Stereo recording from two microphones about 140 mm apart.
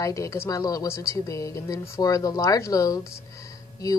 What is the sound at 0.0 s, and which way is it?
Speech, 20° left (ahead or behind).